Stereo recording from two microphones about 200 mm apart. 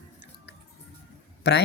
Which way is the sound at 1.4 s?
55° left (ahead or behind).